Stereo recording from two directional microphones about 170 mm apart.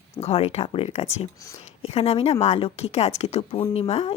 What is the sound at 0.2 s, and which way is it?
Speech, 35° left (ahead or behind).